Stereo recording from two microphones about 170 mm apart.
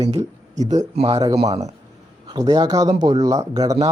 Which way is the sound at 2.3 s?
25° right (ahead or behind).